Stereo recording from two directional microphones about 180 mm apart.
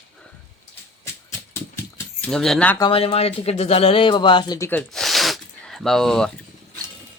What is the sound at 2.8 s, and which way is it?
Speech, 30° left (ahead or behind).